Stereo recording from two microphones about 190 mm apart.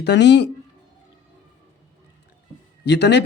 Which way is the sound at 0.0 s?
65° left (ahead or behind).